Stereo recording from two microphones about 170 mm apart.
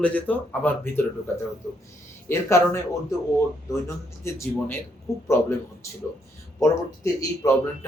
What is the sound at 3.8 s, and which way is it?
Speech, 15° left (ahead or behind).